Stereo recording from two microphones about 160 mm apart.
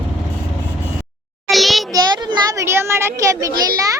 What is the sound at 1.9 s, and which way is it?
A child's voice, 20° right (ahead or behind).